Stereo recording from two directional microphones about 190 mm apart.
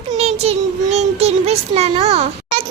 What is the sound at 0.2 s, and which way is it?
A child's voice, 30° right (ahead or behind).